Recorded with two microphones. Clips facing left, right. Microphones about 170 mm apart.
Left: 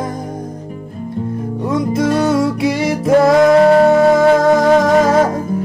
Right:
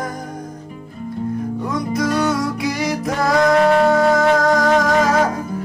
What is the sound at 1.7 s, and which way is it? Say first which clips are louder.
Music: left 6 dB; 25° left (ahead or behind).